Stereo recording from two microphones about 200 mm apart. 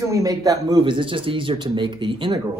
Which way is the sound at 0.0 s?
15° right (ahead or behind).